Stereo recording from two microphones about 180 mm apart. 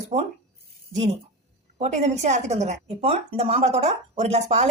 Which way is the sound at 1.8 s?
40° right (ahead or behind).